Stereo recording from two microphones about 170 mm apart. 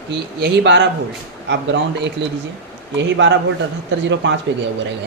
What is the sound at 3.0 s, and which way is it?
Speech, 90° right.